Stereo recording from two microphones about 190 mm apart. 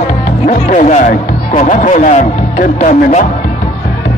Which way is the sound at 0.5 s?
40° left (ahead or behind).